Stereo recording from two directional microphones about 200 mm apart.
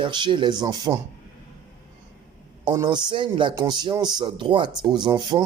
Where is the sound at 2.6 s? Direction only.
20° right (ahead or behind).